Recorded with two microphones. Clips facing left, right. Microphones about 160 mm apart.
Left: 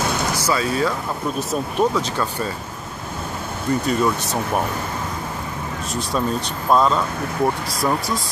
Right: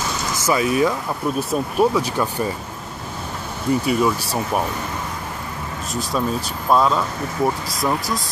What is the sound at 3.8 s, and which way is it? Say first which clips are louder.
Speech: right 1 dB; 5° right (ahead or behind).